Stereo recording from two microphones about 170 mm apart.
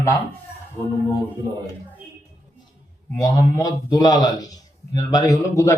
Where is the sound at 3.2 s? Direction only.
20° left (ahead or behind).